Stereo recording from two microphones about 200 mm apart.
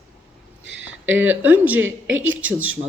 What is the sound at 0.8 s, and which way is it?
A woman's voice, 10° right (ahead or behind).